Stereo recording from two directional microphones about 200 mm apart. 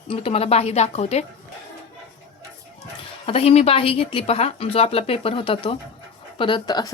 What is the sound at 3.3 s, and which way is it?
Speech, 30° left (ahead or behind).